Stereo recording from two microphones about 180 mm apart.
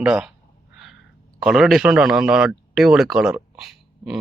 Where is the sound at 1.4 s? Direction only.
Centre (ahead or behind).